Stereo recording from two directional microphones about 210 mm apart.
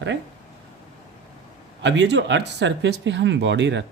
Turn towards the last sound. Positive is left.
turn(degrees=-55)  # may be behind; listen again after turning